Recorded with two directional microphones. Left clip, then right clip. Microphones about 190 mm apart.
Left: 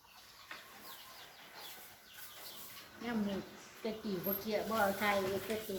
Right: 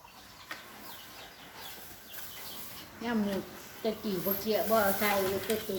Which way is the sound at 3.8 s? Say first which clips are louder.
Right 8 dB; 20° right (ahead or behind).